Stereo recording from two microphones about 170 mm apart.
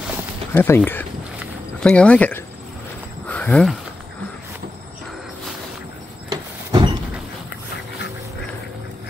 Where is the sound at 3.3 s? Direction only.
10° left (ahead or behind).